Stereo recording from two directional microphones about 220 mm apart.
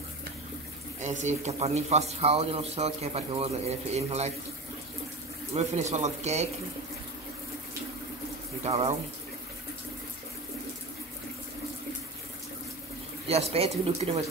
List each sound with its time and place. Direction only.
1.0 s speech: 30° right (ahead or behind)
5.5 s speech: 30° right (ahead or behind)
8.6 s speech: 25° right (ahead or behind)
13.3 s speech: 25° right (ahead or behind)